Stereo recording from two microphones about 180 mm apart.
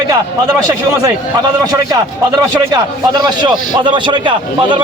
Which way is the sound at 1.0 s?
20° right (ahead or behind).